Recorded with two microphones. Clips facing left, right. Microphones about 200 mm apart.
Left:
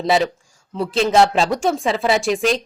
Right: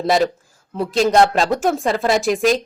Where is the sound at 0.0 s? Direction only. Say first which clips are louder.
Right 1 dB; centre (ahead or behind).